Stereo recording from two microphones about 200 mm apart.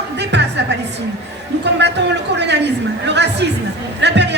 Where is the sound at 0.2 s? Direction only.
60° right (ahead or behind).